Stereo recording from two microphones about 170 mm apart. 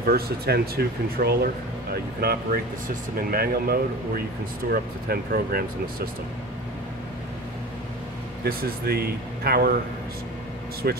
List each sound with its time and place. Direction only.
0.0 s speech: 65° right (ahead or behind)
8.5 s speech: 65° right (ahead or behind)
10.8 s speech: 65° right (ahead or behind)